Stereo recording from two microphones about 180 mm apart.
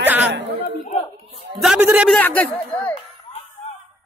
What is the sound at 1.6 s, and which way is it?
Speech, 5° right (ahead or behind).